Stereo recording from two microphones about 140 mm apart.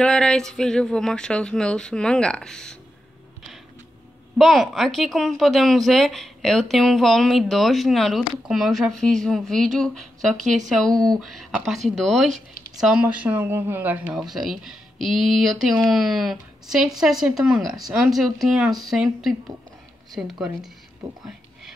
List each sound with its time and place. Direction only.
0.0 s speech: 5° left (ahead or behind)
4.4 s speech: centre (ahead or behind)
14.1 s speech: centre (ahead or behind)